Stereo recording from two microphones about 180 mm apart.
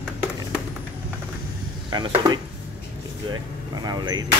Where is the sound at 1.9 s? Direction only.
25° right (ahead or behind).